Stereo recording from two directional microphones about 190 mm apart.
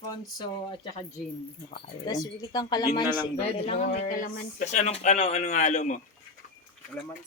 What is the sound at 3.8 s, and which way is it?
Speech, 45° left (ahead or behind).